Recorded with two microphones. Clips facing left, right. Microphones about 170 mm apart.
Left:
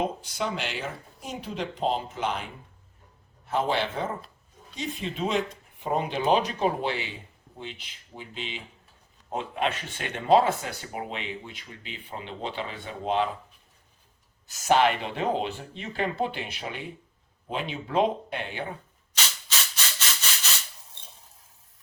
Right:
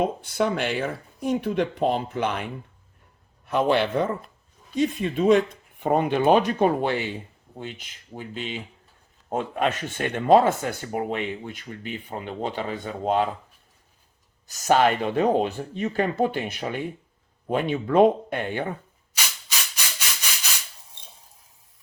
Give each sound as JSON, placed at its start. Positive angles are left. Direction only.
{"t": 0.0, "sound": "a man's voice", "side_deg": -55}
{"t": 14.4, "sound": "speech", "side_deg": -45}
{"t": 19.1, "sound": "rub", "side_deg": -10}